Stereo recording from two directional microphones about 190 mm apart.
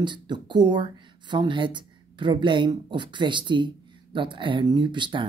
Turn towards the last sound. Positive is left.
turn(degrees=-25)  # may be behind; listen again after turning